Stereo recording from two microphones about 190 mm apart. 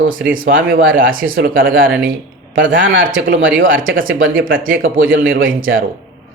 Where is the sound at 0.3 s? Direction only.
50° right (ahead or behind).